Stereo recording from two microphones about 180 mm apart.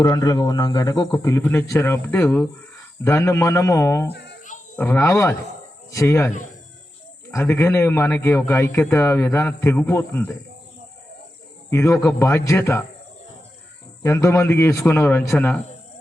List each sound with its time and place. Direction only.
0.0 s a man's voice: 20° left (ahead or behind)
4.1 s a sound: 70° left (ahead or behind)
4.8 s a man's voice: 15° left (ahead or behind)
7.3 s a man's voice: 15° left (ahead or behind)
11.7 s a man's voice: 15° left (ahead or behind)
14.0 s a man's voice: 15° left (ahead or behind)